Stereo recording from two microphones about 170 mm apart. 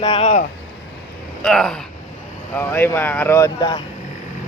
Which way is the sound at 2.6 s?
15° left (ahead or behind).